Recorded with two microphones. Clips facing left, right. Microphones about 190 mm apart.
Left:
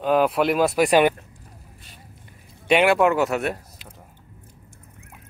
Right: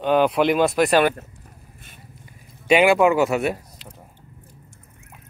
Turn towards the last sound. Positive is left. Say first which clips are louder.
# right 2 dB
turn(degrees=0)  # may be behind; listen again after turning